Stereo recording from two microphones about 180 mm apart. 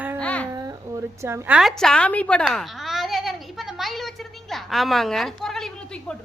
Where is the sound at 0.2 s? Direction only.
5° left (ahead or behind).